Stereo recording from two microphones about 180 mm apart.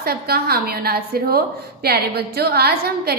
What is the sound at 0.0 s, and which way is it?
A woman's voice, 60° right (ahead or behind).